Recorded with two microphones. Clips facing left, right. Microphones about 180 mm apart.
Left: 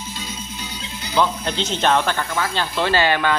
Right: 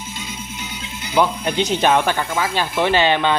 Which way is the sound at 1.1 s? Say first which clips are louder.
Right 3 dB; 15° right (ahead or behind).